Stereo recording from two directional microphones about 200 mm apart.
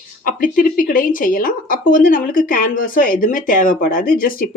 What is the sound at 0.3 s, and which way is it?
A woman's voice, 45° left (ahead or behind).